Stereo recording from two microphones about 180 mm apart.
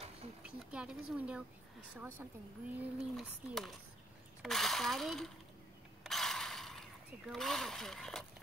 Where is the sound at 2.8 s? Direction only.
Centre (ahead or behind).